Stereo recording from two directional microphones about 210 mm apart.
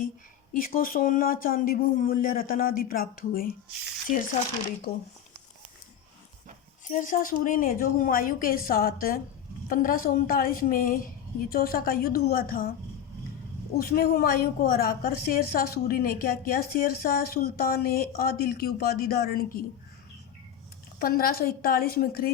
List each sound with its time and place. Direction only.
0.5 s a woman's voice: 40° left (ahead or behind)
6.8 s a woman's voice: 40° left (ahead or behind)
13.7 s a woman's voice: 45° left (ahead or behind)
21.0 s a woman's voice: 45° left (ahead or behind)